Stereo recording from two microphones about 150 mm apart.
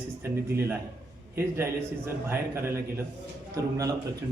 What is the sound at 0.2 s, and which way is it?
A man's voice, 15° right (ahead or behind).